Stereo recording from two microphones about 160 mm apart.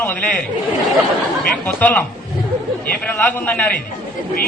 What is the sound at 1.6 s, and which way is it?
A man's voice, 10° left (ahead or behind).